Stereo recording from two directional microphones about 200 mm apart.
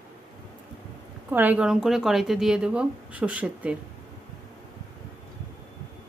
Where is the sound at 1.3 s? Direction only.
10° right (ahead or behind).